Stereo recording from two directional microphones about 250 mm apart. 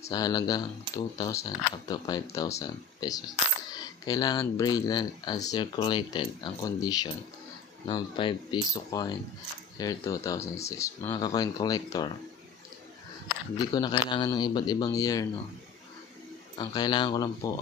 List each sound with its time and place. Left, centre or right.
0.1 s speech: centre
13.6 s speech: centre
16.5 s speech: centre